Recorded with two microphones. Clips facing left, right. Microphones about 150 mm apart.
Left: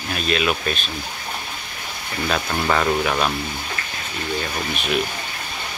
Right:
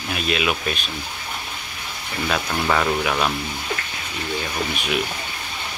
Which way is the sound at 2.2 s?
Centre (ahead or behind).